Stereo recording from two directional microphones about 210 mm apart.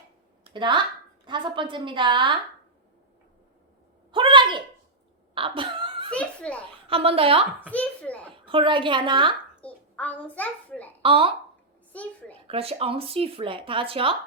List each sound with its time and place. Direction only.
0.4 s speech: 20° right (ahead or behind)
4.1 s a sound: 25° right (ahead or behind)
6.1 s a child's voice: 5° left (ahead or behind)
6.8 s speech: 25° right (ahead or behind)
7.7 s a sound: 5° left (ahead or behind)
8.4 s speech: 25° right (ahead or behind)
9.6 s a sound: 5° left (ahead or behind)
11.0 s speech: 25° right (ahead or behind)
11.9 s a child's voice: 5° left (ahead or behind)
12.5 s speech: 30° right (ahead or behind)